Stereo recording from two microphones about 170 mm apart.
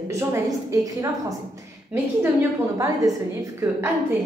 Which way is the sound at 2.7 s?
15° right (ahead or behind).